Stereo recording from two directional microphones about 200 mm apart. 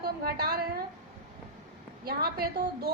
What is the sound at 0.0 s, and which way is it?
Speech, 50° right (ahead or behind).